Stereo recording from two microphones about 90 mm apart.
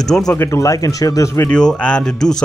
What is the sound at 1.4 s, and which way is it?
Speech, 10° left (ahead or behind).